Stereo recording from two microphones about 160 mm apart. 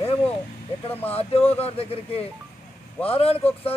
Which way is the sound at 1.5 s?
40° left (ahead or behind).